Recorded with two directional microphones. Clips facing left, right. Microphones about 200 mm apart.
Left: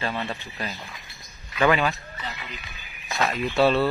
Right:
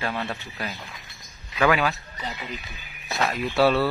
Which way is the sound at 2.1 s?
15° right (ahead or behind).